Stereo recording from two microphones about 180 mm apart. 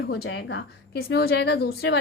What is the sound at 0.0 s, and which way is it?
A woman's voice, 70° left (ahead or behind).